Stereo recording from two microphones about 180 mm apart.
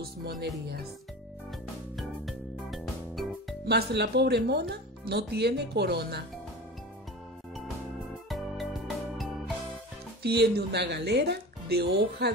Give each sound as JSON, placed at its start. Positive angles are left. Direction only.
{"t": 0.0, "sound": "speech", "side_deg": -65}
{"t": 2.0, "sound": "music", "side_deg": 0}
{"t": 3.6, "sound": "speech", "side_deg": -65}
{"t": 8.3, "sound": "music", "side_deg": 0}
{"t": 10.2, "sound": "speech", "side_deg": -65}